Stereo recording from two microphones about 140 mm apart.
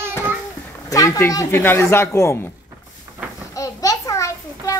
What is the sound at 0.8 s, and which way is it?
Speech, 25° left (ahead or behind).